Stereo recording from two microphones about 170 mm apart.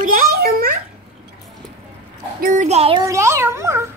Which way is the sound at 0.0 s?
60° right (ahead or behind).